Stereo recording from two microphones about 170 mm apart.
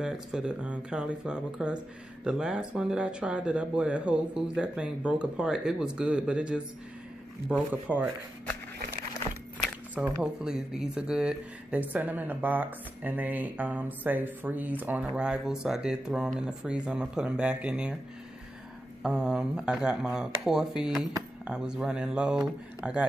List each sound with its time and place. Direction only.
0.0 s speech: 5° right (ahead or behind)
7.9 s speech: 10° left (ahead or behind)
9.9 s speech: 5° right (ahead or behind)
19.0 s speech: 5° right (ahead or behind)